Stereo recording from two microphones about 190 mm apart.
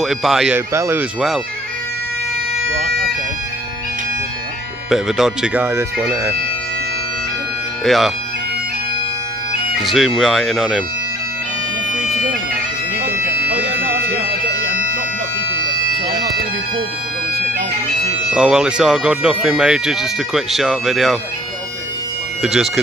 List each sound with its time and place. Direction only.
0.0 s speech: centre (ahead or behind)
4.8 s speech: centre (ahead or behind)
7.8 s speech: centre (ahead or behind)
9.8 s speech: centre (ahead or behind)
12.1 s bagpipes: 50° right (ahead or behind)
13.0 s a sound: 10° right (ahead or behind)
18.3 s speech: 5° right (ahead or behind)
22.4 s speech: 5° right (ahead or behind)